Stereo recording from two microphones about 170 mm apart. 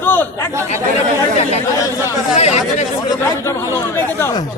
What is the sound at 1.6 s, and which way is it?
Speech, 20° left (ahead or behind).